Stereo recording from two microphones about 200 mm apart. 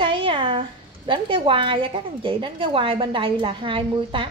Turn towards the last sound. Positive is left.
turn(degrees=-25)  # may be behind; listen again after turning